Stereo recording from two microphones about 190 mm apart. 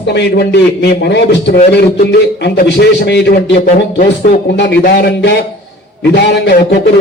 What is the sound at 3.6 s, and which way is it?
Speech, 45° left (ahead or behind).